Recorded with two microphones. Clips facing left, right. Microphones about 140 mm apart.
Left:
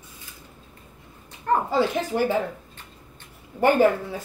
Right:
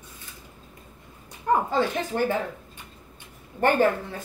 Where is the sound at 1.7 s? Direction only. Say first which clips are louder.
Left 2 dB; 10° left (ahead or behind).